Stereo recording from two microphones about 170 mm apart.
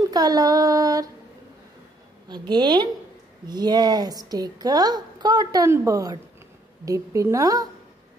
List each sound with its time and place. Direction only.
0.1 s a woman's voice: 20° right (ahead or behind)
2.2 s a woman's voice: 25° right (ahead or behind)